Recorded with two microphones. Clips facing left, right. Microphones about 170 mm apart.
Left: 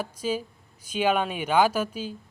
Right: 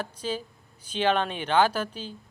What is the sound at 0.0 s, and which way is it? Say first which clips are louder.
A man's voice: left 3 dB; 10° left (ahead or behind).